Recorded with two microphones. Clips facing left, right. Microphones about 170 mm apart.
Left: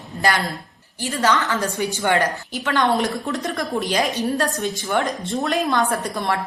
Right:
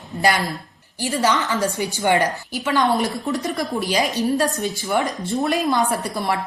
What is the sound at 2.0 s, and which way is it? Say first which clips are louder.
Speech: right 2 dB; 15° right (ahead or behind).